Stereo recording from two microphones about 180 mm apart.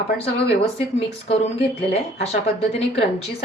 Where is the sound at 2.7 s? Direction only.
35° left (ahead or behind).